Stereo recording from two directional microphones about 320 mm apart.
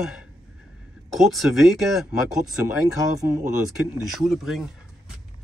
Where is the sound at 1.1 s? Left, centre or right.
Centre.